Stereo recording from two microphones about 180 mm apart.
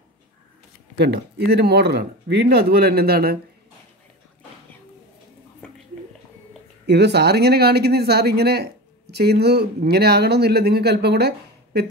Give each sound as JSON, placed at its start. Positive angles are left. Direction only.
{"t": 0.9, "sound": "speech", "side_deg": -65}
{"t": 6.9, "sound": "speech", "side_deg": -70}